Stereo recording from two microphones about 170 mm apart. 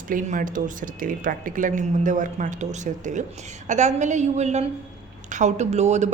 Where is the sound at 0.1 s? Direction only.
50° right (ahead or behind).